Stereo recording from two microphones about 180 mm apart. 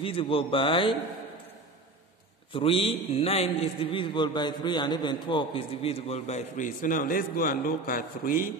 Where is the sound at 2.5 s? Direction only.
30° left (ahead or behind); by 8.5 s 50° left (ahead or behind).